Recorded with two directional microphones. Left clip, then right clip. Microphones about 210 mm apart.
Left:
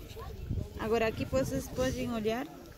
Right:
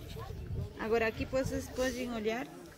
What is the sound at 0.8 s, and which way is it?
Speech, 50° left (ahead or behind).